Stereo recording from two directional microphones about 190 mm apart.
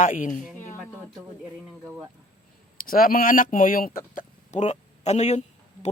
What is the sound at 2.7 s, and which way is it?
Speech, 45° left (ahead or behind).